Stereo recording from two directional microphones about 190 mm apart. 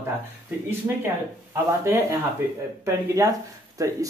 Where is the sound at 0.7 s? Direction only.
10° right (ahead or behind).